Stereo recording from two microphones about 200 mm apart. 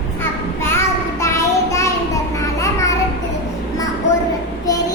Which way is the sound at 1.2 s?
15° left (ahead or behind).